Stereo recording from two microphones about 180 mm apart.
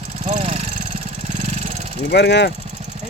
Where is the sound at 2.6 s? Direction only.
40° right (ahead or behind).